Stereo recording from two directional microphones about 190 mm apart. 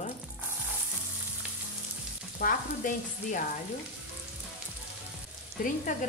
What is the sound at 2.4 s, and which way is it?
Stir, 45° left (ahead or behind).